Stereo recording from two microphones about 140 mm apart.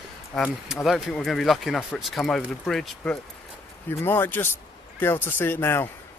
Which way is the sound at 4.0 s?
15° left (ahead or behind).